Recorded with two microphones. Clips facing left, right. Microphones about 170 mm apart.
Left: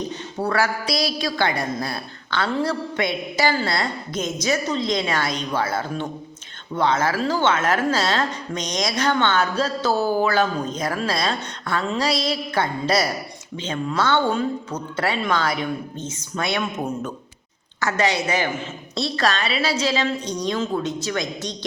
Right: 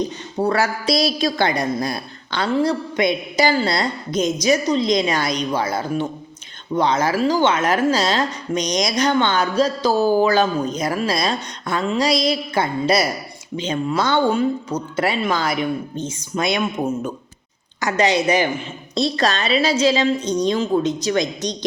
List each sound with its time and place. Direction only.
0.3 s a woman's voice: 20° right (ahead or behind)